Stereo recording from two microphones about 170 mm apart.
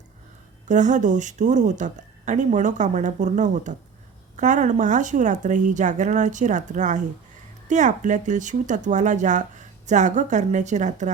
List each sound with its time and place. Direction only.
0.7 s speech: 45° right (ahead or behind)